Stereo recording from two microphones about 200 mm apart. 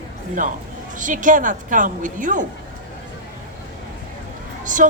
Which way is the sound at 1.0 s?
40° right (ahead or behind).